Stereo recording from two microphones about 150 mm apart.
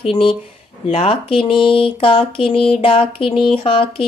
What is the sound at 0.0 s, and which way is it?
Mantra, 35° left (ahead or behind).